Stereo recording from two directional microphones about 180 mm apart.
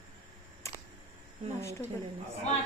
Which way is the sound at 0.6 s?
15° left (ahead or behind).